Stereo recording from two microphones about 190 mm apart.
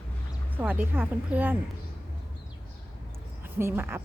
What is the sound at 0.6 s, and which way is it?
Speech, 10° right (ahead or behind).